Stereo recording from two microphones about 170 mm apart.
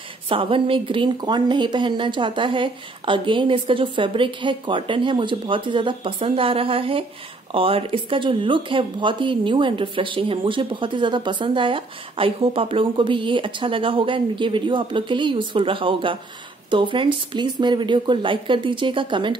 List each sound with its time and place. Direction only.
0.3 s speech: 30° right (ahead or behind)